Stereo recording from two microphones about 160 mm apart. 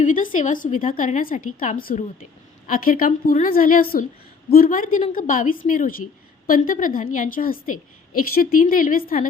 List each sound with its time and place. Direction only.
0.0 s a woman's voice: 55° left (ahead or behind)